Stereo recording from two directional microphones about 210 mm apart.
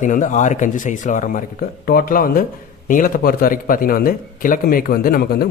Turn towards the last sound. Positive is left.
turn(degrees=45)  # may be behind; listen again after turning